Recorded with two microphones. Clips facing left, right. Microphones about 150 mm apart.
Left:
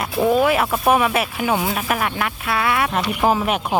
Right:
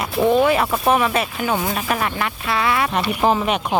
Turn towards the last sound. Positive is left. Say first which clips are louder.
# even
turn(degrees=5)  # may be behind; listen again after turning